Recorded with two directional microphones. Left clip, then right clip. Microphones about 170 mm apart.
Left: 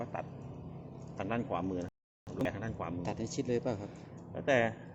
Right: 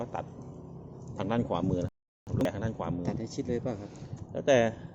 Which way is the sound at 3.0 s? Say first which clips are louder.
Right 2 dB; centre (ahead or behind).